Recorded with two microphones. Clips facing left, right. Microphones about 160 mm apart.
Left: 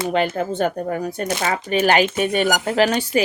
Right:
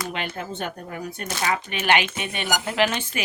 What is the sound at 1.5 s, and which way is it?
Speech, 40° left (ahead or behind).